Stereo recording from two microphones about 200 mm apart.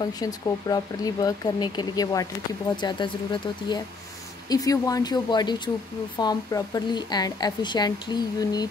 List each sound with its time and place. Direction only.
0.0 s a woman's voice: 20° left (ahead or behind)